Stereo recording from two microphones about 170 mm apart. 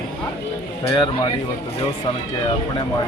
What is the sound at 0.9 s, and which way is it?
Speech, 20° left (ahead or behind).